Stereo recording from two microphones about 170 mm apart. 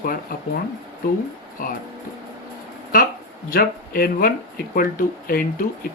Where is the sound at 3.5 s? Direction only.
60° left (ahead or behind).